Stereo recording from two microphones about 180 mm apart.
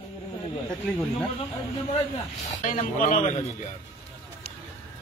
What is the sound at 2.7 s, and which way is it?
A man's voice, 50° left (ahead or behind).